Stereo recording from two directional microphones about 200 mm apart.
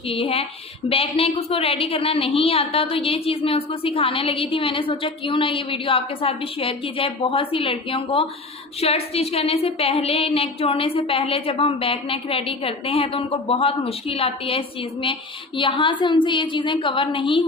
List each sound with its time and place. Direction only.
0.1 s a woman's voice: 30° left (ahead or behind)